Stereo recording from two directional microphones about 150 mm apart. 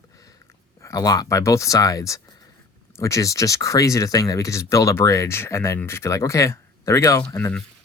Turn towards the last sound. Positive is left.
turn(degrees=15)  # may be behind; listen again after turning